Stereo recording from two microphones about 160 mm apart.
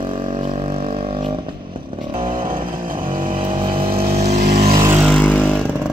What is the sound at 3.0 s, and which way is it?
Vehicle, 60° right (ahead or behind).